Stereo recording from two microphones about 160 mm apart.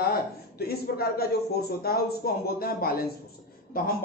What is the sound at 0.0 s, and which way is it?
Speech, 75° left (ahead or behind).